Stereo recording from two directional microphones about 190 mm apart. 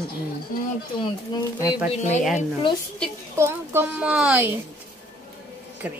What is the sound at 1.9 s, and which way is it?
Speech, 35° left (ahead or behind).